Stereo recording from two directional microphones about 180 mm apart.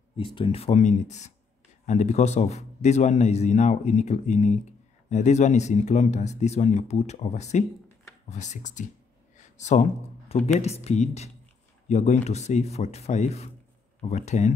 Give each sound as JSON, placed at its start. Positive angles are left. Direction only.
{"t": 0.2, "sound": "a man's voice", "side_deg": 30}